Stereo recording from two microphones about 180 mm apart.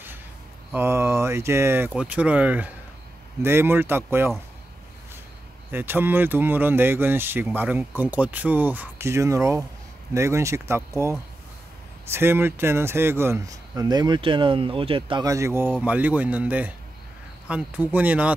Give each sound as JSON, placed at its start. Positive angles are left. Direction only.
{"t": 0.7, "sound": "speech", "side_deg": -15}
{"t": 5.7, "sound": "speech", "side_deg": -10}
{"t": 15.2, "sound": "speech", "side_deg": -15}